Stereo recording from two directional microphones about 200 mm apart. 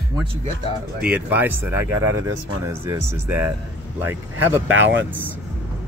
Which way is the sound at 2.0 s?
90° right.